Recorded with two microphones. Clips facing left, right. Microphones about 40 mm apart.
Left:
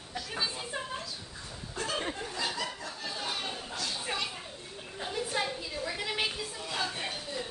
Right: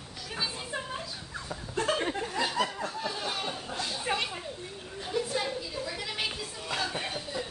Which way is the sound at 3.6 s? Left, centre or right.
Centre.